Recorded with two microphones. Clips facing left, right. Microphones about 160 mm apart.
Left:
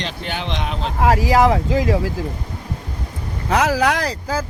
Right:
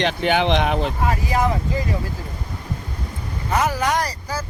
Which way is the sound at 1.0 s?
90° left.